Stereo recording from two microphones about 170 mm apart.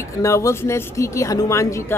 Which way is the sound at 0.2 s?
20° left (ahead or behind).